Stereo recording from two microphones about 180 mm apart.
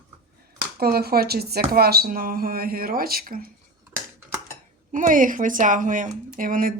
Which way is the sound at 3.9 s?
15° right (ahead or behind).